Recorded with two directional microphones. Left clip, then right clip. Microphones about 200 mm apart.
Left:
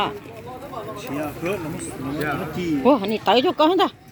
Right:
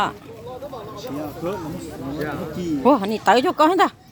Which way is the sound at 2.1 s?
25° left (ahead or behind).